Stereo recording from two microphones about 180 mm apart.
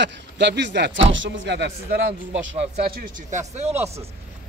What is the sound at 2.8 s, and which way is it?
Speech, 55° right (ahead or behind).